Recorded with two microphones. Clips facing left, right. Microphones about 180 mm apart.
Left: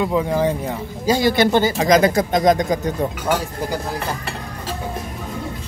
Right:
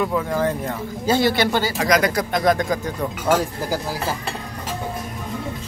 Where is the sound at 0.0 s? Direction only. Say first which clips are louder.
Left 2 dB; 20° left (ahead or behind).